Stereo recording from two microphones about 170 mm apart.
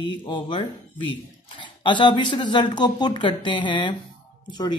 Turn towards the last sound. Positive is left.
turn(degrees=25)  # may be behind; listen again after turning